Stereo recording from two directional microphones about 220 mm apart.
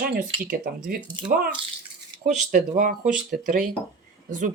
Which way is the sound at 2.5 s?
35° right (ahead or behind).